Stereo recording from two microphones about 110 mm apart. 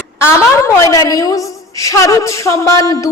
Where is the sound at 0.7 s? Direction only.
30° left (ahead or behind).